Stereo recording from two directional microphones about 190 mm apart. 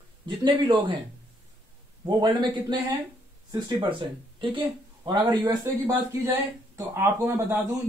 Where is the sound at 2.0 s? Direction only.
20° right (ahead or behind).